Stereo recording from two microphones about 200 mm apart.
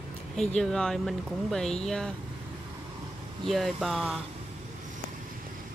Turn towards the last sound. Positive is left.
turn(degrees=0)  # may be behind; listen again after turning